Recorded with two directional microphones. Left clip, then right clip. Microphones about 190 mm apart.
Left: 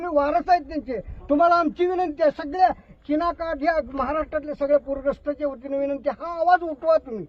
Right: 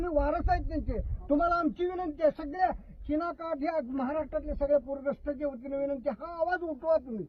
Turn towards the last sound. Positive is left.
turn(degrees=20)  # may be behind; listen again after turning